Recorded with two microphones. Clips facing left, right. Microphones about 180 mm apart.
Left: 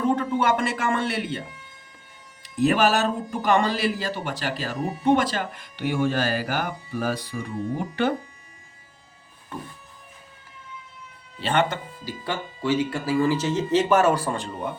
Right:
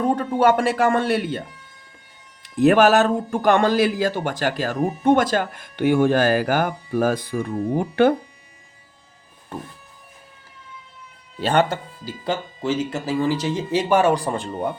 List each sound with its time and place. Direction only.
0.0 s speech: 35° right (ahead or behind)
2.6 s speech: 55° right (ahead or behind)
11.4 s speech: 40° right (ahead or behind)
12.2 s speech: 25° right (ahead or behind)